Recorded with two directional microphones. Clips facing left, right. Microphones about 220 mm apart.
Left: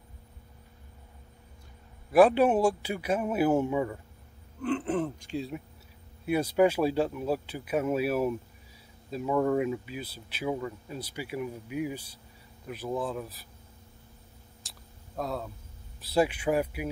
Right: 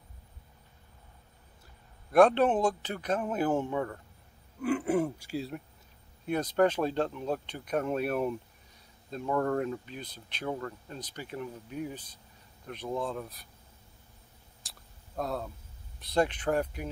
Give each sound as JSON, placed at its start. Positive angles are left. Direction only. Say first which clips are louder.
{"t": 2.0, "sound": "speech", "louder": "left 2 dB", "side_deg": 5}
{"t": 4.6, "sound": "speech", "louder": "right 1 dB", "side_deg": -10}
{"t": 6.2, "sound": "speech", "louder": "left 2 dB", "side_deg": 10}
{"t": 14.6, "sound": "a sound", "louder": "left 1 dB", "side_deg": 0}
{"t": 16.0, "sound": "speech", "louder": "left 2 dB", "side_deg": 5}